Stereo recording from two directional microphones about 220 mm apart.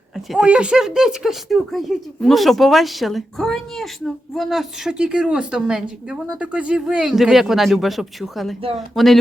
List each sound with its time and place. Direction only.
0.3 s speech: 5° right (ahead or behind)